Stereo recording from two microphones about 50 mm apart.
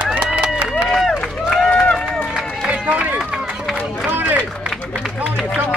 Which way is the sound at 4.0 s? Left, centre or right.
Right.